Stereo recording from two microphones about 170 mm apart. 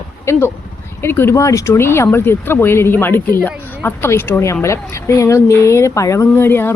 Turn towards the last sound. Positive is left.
turn(degrees=15)  # may be behind; listen again after turning